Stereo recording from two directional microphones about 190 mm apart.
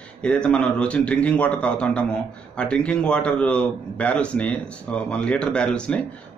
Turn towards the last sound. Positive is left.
turn(degrees=5)  # may be behind; listen again after turning